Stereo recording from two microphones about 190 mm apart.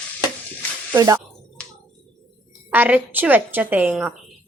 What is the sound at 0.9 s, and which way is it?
Speech, 15° right (ahead or behind).